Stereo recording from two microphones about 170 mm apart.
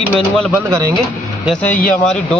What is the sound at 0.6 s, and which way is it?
Speech, 20° right (ahead or behind).